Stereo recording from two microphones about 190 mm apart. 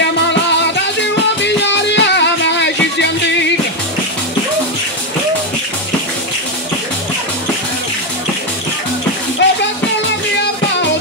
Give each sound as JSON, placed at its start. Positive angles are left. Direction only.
{"t": 0.3, "sound": "music", "side_deg": 65}
{"t": 9.4, "sound": "music", "side_deg": 65}